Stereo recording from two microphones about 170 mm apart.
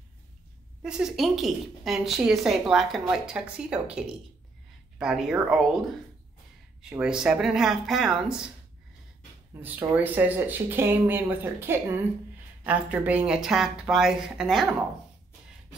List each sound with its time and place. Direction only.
0.8 s a woman's voice: 5° right (ahead or behind)
6.8 s a woman's voice: 5° right (ahead or behind)
9.5 s a woman's voice: 10° right (ahead or behind)